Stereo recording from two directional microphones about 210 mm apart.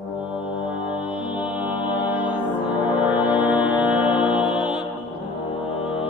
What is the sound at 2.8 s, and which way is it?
Brass instrument, 10° right (ahead or behind).